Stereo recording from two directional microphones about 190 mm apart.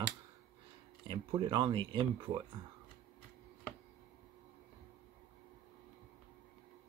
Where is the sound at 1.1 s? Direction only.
25° right (ahead or behind).